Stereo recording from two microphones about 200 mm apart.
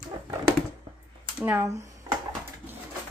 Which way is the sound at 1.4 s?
10° right (ahead or behind).